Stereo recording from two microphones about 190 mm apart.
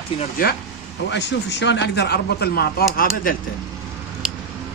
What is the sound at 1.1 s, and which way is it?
Speech, 70° left (ahead or behind).